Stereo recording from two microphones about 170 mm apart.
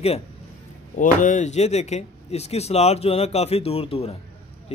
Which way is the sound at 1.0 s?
50° left (ahead or behind).